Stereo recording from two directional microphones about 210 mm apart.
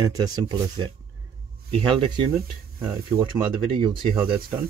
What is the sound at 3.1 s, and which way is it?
Speech, 25° right (ahead or behind).